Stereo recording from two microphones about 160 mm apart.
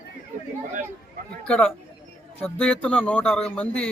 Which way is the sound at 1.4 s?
5° left (ahead or behind).